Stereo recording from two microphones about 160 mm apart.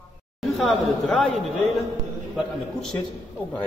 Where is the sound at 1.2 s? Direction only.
Centre (ahead or behind).